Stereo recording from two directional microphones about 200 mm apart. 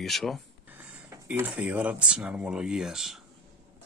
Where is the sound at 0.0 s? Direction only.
Centre (ahead or behind).